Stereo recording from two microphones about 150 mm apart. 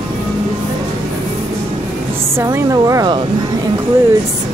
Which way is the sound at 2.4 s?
20° right (ahead or behind).